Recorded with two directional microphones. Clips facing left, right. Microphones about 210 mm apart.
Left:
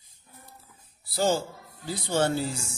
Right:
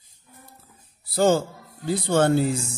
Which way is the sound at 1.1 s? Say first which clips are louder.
Right 6 dB; 55° right (ahead or behind).